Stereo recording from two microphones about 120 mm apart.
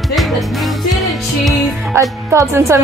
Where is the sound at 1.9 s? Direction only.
25° right (ahead or behind).